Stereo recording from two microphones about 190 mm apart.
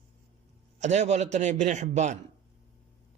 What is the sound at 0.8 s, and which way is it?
Speech, 35° right (ahead or behind).